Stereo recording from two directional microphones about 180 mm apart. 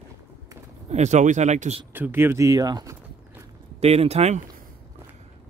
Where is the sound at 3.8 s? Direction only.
35° right (ahead or behind).